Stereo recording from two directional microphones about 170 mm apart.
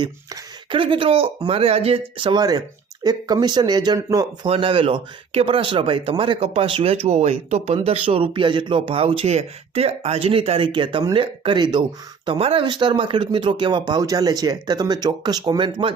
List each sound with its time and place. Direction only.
0.7 s speech: 30° right (ahead or behind)
4.4 s speech: 35° right (ahead or behind)